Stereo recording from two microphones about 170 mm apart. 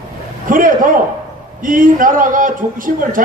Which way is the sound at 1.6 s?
55° right (ahead or behind).